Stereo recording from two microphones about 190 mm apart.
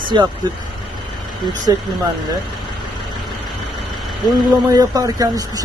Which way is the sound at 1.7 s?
20° right (ahead or behind).